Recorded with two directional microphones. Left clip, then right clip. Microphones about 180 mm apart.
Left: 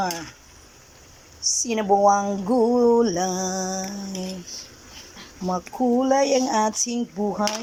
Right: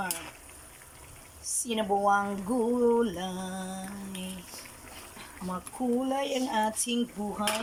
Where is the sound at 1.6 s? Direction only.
15° left (ahead or behind).